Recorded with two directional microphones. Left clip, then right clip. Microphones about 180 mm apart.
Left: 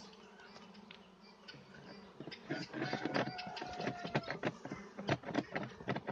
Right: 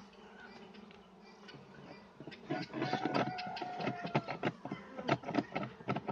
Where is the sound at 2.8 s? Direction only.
5° left (ahead or behind).